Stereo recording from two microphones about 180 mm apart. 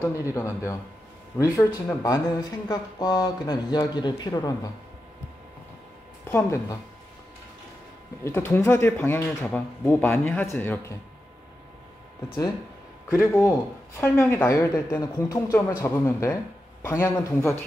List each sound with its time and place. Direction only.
0.0 s speech: 15° left (ahead or behind)
6.2 s speech: 15° left (ahead or behind)
8.2 s speech: 10° left (ahead or behind)
13.1 s speech: 20° left (ahead or behind)